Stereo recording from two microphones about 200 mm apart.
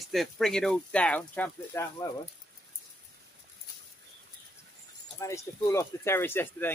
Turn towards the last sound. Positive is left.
turn(degrees=10)  # may be behind; listen again after turning